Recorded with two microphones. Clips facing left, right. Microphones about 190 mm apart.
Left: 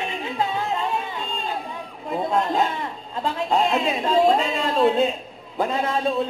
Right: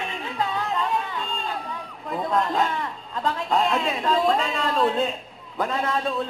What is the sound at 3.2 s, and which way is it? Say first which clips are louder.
A man's voice: left 2 dB; 20° left (ahead or behind).